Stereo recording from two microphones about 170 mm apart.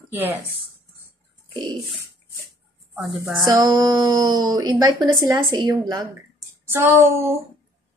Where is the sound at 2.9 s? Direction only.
20° right (ahead or behind).